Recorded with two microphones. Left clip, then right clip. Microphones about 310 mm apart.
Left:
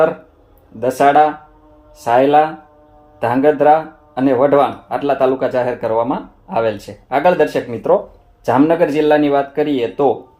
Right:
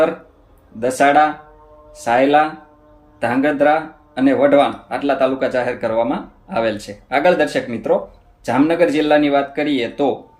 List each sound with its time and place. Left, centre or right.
0.8 s speech: centre